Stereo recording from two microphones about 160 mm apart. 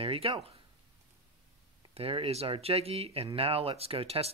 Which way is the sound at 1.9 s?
35° right (ahead or behind).